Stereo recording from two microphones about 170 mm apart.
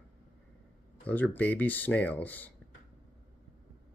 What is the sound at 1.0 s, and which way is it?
Speech, 10° left (ahead or behind).